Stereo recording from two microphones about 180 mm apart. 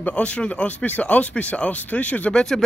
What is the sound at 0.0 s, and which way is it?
Speech, 5° left (ahead or behind).